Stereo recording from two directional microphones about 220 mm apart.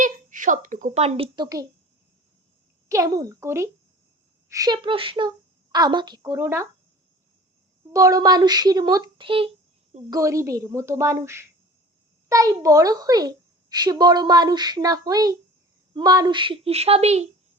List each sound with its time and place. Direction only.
0.0 s a child's voice: 35° right (ahead or behind); by 1.6 s 20° right (ahead or behind)
2.9 s a child's voice: 15° right (ahead or behind)
7.9 s a child's voice: 15° right (ahead or behind)